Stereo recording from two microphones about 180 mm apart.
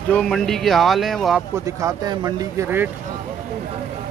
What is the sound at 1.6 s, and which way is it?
Speech, 20° right (ahead or behind).